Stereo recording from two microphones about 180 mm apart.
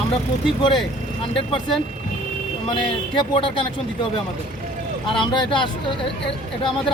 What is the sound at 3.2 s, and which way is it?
Speech, 30° left (ahead or behind).